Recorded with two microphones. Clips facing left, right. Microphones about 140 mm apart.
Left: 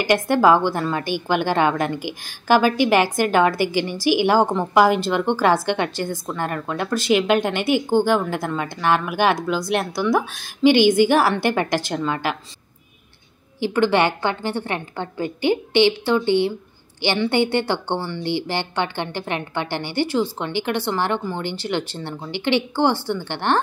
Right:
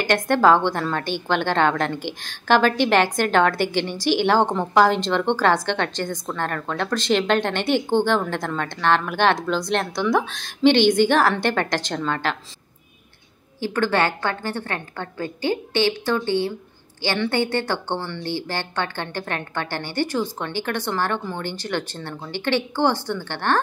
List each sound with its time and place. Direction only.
0.1 s a woman's voice: 10° left (ahead or behind)
13.6 s a woman's voice: 15° left (ahead or behind)